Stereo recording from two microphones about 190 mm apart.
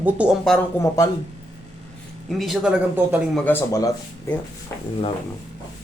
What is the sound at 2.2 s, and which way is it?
A man's voice, centre (ahead or behind).